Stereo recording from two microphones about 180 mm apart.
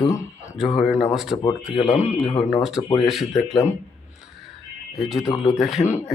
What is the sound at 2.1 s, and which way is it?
Speech, 15° left (ahead or behind).